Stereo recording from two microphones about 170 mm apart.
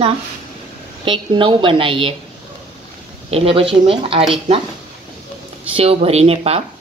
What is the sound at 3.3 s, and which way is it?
Speech, 35° right (ahead or behind).